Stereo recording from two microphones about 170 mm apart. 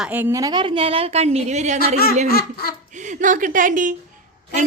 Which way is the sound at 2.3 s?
65° left (ahead or behind).